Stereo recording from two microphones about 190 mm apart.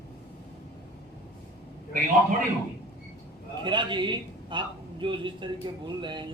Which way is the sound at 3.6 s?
25° right (ahead or behind).